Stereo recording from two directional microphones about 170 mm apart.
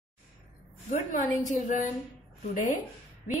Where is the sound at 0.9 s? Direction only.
50° left (ahead or behind).